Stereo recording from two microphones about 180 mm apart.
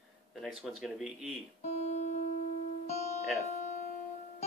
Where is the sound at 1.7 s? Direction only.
40° left (ahead or behind).